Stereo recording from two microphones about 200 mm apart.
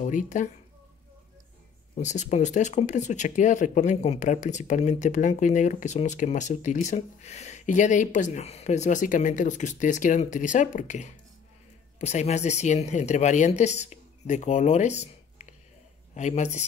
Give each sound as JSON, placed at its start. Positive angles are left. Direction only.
{"t": 0.0, "sound": "speech", "side_deg": 40}
{"t": 2.0, "sound": "speech", "side_deg": 35}